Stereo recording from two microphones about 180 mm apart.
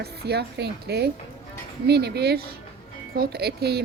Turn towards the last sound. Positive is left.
turn(degrees=-65)  # may be behind; listen again after turning